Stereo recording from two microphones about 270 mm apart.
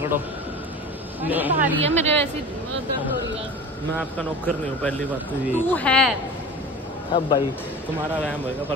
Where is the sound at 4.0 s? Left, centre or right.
Centre.